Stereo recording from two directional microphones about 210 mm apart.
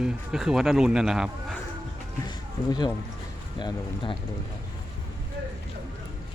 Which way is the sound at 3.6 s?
20° left (ahead or behind).